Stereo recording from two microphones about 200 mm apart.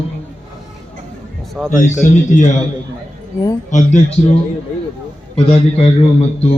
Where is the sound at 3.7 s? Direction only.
35° left (ahead or behind).